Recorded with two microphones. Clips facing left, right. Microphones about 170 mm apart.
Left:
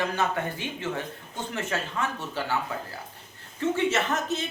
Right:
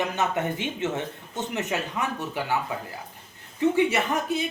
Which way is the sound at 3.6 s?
15° right (ahead or behind).